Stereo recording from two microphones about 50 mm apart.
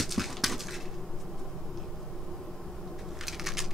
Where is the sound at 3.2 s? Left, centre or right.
Centre.